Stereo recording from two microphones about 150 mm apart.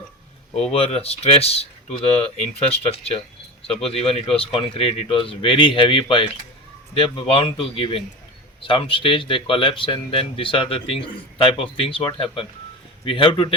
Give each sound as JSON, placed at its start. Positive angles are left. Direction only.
{"t": 0.7, "sound": "speech", "side_deg": 40}